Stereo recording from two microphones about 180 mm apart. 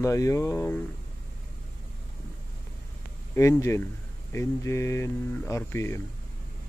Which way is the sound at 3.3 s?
15° left (ahead or behind).